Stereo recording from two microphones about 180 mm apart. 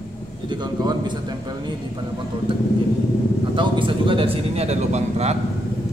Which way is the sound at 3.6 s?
30° right (ahead or behind).